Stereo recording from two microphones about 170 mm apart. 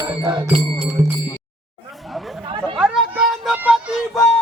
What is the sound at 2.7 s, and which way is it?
Music, 5° right (ahead or behind).